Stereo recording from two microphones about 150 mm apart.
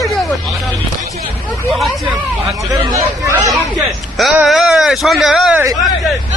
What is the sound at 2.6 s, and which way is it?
Hubbub, 20° right (ahead or behind).